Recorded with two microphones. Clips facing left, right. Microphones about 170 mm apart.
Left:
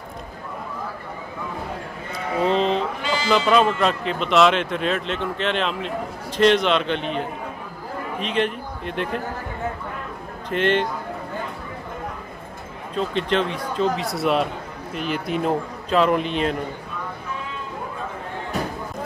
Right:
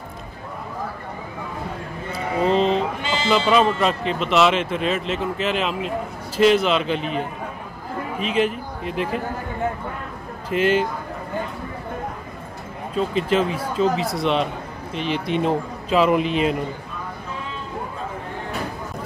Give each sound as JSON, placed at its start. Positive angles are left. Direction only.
{"t": 2.4, "sound": "speech", "side_deg": 0}
{"t": 3.0, "sound": "sheep", "side_deg": -25}
{"t": 3.3, "sound": "speech", "side_deg": 0}
{"t": 10.5, "sound": "speech", "side_deg": -5}
{"t": 12.9, "sound": "speech", "side_deg": -5}